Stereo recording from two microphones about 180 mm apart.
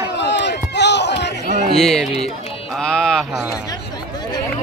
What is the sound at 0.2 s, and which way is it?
Run, 75° left (ahead or behind).